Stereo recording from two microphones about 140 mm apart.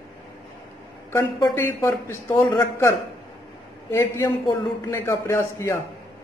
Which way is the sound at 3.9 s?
15° left (ahead or behind).